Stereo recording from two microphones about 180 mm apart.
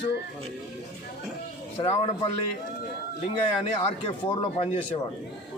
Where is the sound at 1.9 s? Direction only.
35° left (ahead or behind).